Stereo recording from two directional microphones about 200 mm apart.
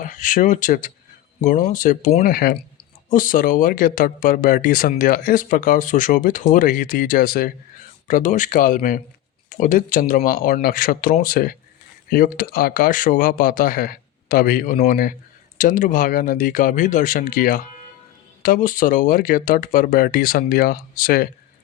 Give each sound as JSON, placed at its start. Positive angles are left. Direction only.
{"t": 0.0, "sound": "speech", "side_deg": 40}